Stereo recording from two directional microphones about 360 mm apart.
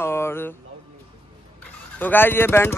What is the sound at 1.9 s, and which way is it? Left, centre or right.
Speech, centre.